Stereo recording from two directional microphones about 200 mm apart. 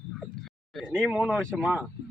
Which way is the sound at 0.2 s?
Centre (ahead or behind).